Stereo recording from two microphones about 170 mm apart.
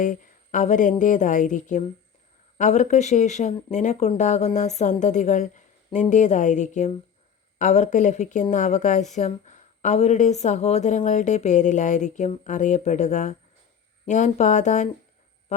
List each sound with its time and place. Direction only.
0.0 s a woman's voice: 50° left (ahead or behind)